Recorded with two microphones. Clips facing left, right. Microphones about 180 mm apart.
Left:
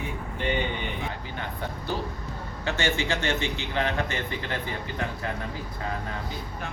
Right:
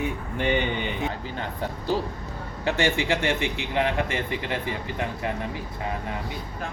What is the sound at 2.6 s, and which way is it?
Speech, 35° right (ahead or behind).